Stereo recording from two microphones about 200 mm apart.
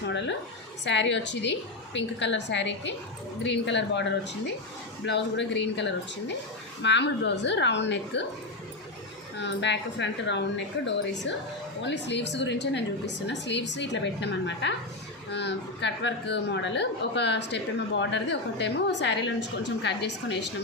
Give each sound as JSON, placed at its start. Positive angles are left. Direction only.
{"t": 0.9, "sound": "a woman's voice", "side_deg": 60}
{"t": 9.4, "sound": "a woman's voice", "side_deg": 60}